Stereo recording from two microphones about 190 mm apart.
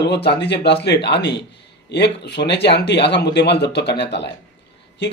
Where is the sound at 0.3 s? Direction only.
60° left (ahead or behind).